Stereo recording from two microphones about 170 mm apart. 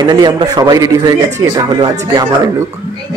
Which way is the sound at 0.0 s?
25° right (ahead or behind).